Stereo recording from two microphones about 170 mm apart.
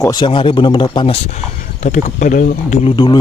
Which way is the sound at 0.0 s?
25° left (ahead or behind).